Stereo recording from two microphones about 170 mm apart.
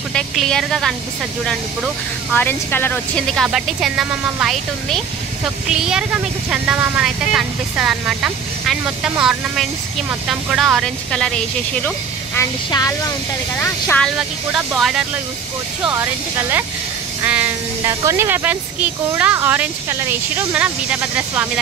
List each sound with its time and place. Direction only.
0.1 s speech: 5° left (ahead or behind)
2.3 s speech: 10° left (ahead or behind)
12.4 s a woman's voice: 20° left (ahead or behind)
13.6 s speech: 10° left (ahead or behind)
14.1 s speech: 5° right (ahead or behind)